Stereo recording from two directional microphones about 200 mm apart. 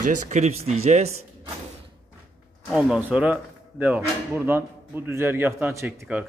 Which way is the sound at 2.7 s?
5° right (ahead or behind).